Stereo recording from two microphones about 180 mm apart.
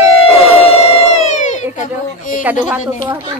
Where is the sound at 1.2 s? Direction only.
40° left (ahead or behind).